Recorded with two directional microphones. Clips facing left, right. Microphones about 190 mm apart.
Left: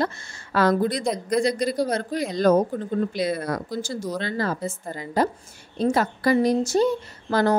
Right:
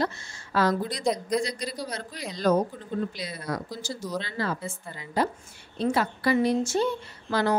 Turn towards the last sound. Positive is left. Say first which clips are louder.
# left 4 dB
turn(degrees=45)  # may be behind; listen again after turning